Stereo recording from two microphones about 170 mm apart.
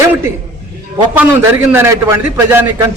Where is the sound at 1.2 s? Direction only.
15° right (ahead or behind).